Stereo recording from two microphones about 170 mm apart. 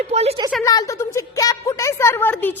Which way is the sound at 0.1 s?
35° right (ahead or behind).